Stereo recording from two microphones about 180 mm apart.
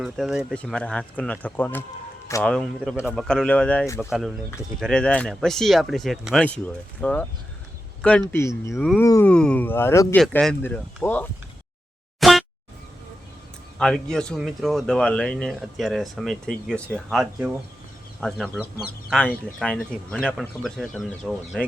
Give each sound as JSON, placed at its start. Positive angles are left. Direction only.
{"t": 0.0, "sound": "speech", "side_deg": 0}
{"t": 8.3, "sound": "speech", "side_deg": 15}
{"t": 12.2, "sound": "air horn", "side_deg": 0}
{"t": 13.7, "sound": "speech", "side_deg": 5}